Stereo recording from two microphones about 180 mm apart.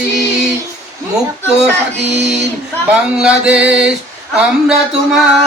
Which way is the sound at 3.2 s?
5° right (ahead or behind).